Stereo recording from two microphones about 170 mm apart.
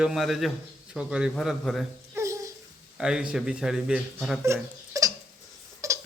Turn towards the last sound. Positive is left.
turn(degrees=-20)  # may be behind; listen again after turning